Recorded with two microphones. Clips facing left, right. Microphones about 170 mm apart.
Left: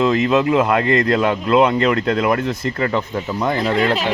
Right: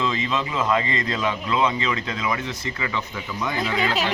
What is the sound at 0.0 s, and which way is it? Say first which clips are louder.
Speech: left 10 dB; 60° left (ahead or behind).